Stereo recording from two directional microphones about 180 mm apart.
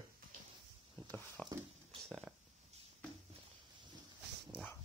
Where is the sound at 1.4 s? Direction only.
5° left (ahead or behind).